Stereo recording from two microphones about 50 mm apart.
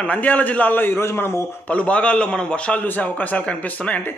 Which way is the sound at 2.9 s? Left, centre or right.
Left.